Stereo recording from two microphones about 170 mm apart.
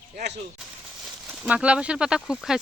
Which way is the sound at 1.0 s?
10° right (ahead or behind).